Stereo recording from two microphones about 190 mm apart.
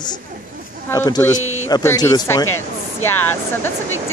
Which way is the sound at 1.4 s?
90° left.